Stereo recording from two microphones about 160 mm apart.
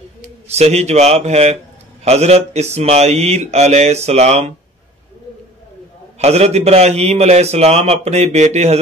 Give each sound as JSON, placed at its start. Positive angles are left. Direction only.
{"t": 0.5, "sound": "a man's voice", "side_deg": -45}
{"t": 6.1, "sound": "a man's voice", "side_deg": -40}